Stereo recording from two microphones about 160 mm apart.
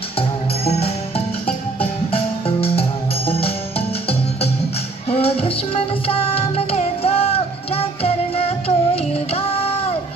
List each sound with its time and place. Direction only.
0.2 s music: 40° left (ahead or behind)